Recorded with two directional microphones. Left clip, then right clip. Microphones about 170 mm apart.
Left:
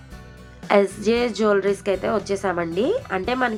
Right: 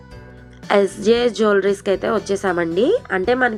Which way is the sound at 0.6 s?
25° right (ahead or behind).